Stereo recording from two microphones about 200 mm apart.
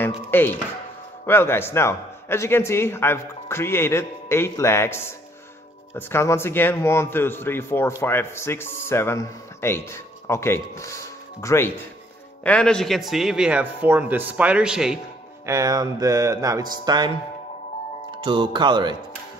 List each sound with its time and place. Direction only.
0.0 s a man's voice: 10° left (ahead or behind)
15.4 s music: 15° right (ahead or behind)
18.2 s speech: 25° right (ahead or behind)